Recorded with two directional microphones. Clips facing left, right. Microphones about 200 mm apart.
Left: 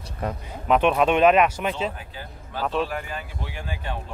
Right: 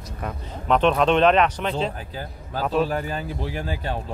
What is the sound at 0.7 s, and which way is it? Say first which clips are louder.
Speech: right 1 dB; 10° left (ahead or behind).